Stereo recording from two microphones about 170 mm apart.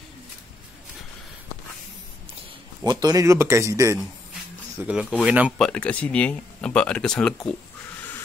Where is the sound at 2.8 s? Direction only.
25° right (ahead or behind).